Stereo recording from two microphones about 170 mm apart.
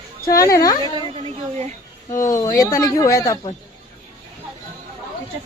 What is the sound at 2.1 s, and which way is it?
Speech, 20° left (ahead or behind).